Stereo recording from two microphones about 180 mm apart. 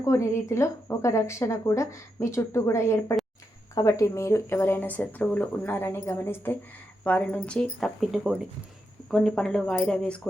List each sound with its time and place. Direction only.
0.0 s speech: 15° left (ahead or behind)